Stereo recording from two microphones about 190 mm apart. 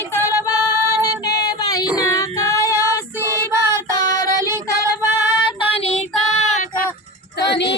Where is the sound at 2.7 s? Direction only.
15° right (ahead or behind).